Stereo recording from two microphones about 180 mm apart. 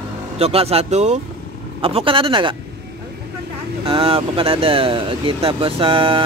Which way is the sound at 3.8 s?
30° right (ahead or behind).